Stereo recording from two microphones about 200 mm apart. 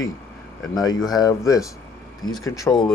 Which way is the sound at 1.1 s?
20° left (ahead or behind).